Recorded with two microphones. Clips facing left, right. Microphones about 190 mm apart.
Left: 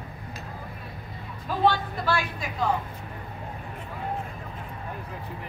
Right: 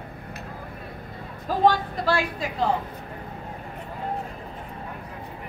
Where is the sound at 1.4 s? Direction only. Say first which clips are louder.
Right 3 dB; 40° right (ahead or behind).